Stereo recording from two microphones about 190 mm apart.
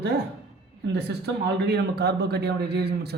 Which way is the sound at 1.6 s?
60° right (ahead or behind).